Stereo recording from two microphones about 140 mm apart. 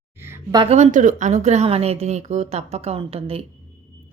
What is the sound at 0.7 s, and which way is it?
A woman's voice, 60° right (ahead or behind).